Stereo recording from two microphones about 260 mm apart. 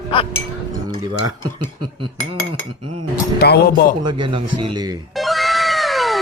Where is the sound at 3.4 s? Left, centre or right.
Left.